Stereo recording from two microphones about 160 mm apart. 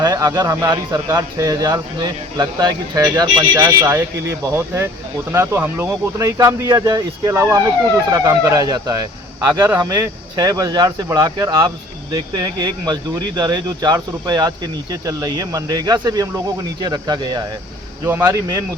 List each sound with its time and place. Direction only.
0.0 s speech: 20° right (ahead or behind)